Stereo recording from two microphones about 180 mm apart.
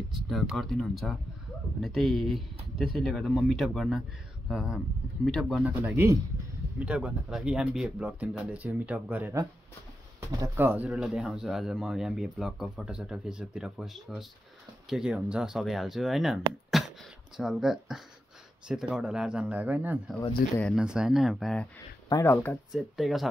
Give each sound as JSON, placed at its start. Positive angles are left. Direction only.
{"t": 0.1, "sound": "speech", "side_deg": 0}
{"t": 16.8, "sound": "a sound", "side_deg": 0}
{"t": 17.4, "sound": "speech", "side_deg": 0}
{"t": 20.4, "sound": "speech", "side_deg": 55}
{"t": 20.7, "sound": "speech", "side_deg": -5}
{"t": 22.1, "sound": "speech", "side_deg": 10}
{"t": 22.7, "sound": "speech", "side_deg": 0}